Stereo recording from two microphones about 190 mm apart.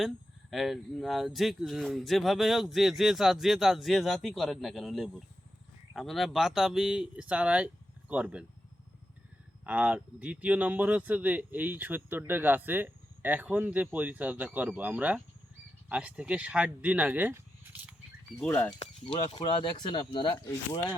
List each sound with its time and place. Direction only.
0.5 s speech: centre (ahead or behind)
9.6 s speech: 5° right (ahead or behind)
18.4 s speech: 10° left (ahead or behind)
18.8 s speech: 25° left (ahead or behind)